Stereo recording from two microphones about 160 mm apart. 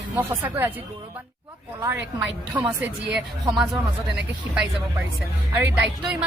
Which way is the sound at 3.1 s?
5° right (ahead or behind).